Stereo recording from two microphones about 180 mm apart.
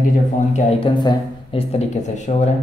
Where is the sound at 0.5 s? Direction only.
25° left (ahead or behind).